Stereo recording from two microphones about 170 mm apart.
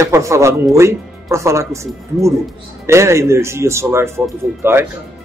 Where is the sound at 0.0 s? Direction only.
15° right (ahead or behind).